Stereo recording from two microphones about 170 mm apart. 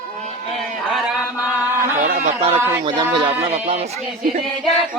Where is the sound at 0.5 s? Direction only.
Centre (ahead or behind).